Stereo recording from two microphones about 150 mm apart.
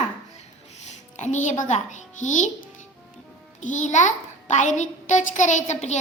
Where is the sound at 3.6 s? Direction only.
55° left (ahead or behind).